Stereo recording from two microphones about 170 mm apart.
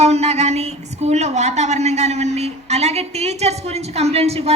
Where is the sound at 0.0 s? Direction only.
40° right (ahead or behind).